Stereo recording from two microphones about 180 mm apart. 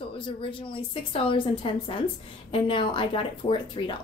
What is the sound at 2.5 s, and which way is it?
A woman's voice, 30° left (ahead or behind).